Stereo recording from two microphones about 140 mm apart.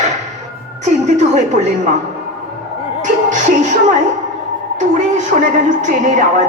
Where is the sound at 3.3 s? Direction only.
65° right (ahead or behind).